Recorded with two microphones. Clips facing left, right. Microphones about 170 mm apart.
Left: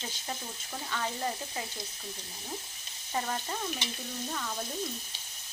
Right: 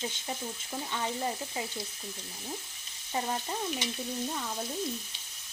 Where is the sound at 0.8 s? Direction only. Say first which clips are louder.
Even; 20° right (ahead or behind).